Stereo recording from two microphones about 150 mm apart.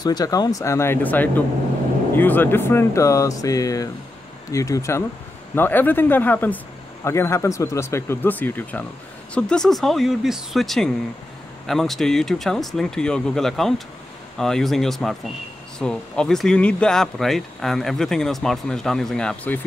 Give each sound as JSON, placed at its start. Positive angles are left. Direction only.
{"t": 0.0, "sound": "speech", "side_deg": 25}